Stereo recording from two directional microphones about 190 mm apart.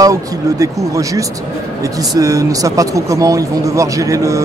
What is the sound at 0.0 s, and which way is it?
Speech, 15° right (ahead or behind).